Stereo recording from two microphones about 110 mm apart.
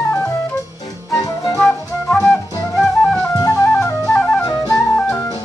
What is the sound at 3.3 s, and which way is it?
Flute, 30° left (ahead or behind).